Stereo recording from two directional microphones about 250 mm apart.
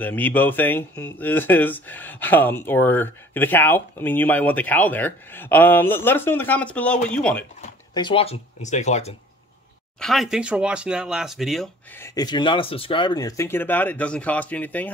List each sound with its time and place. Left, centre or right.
0.0 s speech: centre
7.9 s speech: centre
9.9 s speech: centre
12.2 s speech: centre